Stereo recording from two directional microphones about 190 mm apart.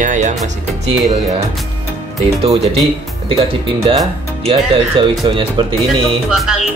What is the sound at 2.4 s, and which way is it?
Speech, 30° right (ahead or behind).